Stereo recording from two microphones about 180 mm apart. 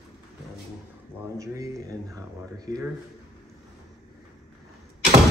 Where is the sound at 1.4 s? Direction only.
15° right (ahead or behind).